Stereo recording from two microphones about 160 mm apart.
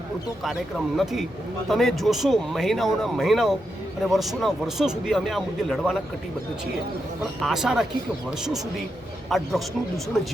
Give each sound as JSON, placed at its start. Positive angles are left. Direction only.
{"t": 0.9, "sound": "a man's voice", "side_deg": 0}
{"t": 7.4, "sound": "a man's voice", "side_deg": 0}
{"t": 9.3, "sound": "a man's voice", "side_deg": 0}